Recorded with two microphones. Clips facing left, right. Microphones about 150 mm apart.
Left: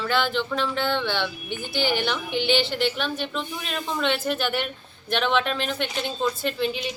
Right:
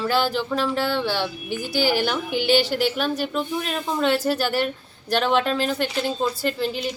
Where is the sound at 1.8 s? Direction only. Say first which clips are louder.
Right 3 dB; 5° right (ahead or behind).